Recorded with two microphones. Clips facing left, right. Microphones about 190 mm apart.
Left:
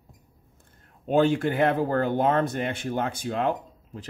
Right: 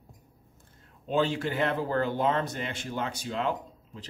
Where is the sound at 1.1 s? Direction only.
50° left (ahead or behind).